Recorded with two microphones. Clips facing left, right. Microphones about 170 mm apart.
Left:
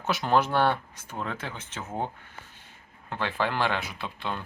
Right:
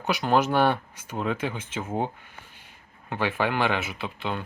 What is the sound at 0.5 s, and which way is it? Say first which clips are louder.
Speech: right 2 dB; 10° right (ahead or behind).